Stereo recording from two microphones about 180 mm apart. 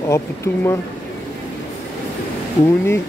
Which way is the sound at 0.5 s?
15° left (ahead or behind).